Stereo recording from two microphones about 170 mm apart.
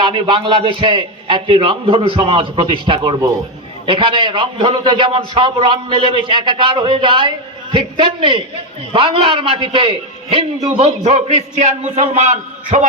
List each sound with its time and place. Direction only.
0.0 s a man's voice: 30° right (ahead or behind); by 12.8 s 45° right (ahead or behind)